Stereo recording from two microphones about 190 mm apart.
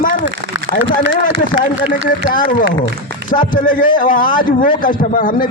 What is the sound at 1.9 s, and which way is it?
A man's voice, 45° left (ahead or behind).